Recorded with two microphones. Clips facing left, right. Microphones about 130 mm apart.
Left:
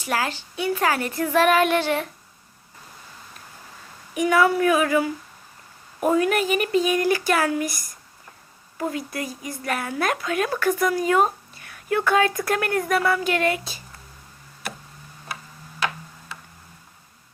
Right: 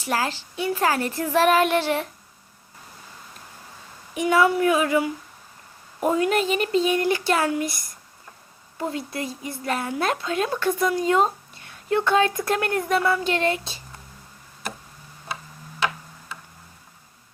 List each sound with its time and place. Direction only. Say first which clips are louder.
0.0 s speech: even; 30° right (ahead or behind)
4.1 s speech: even; 25° right (ahead or behind)